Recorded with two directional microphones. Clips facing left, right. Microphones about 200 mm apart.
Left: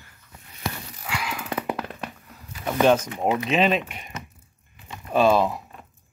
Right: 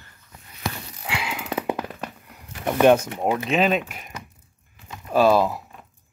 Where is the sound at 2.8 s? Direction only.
15° right (ahead or behind).